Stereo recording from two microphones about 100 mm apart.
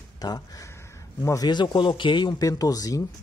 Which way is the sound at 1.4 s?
45° left (ahead or behind).